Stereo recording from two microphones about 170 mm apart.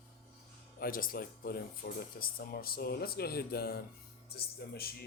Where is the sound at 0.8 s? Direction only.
55° left (ahead or behind).